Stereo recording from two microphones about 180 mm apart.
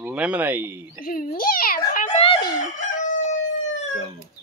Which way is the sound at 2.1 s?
30° left (ahead or behind).